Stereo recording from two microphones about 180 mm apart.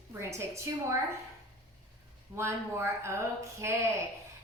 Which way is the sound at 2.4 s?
15° right (ahead or behind).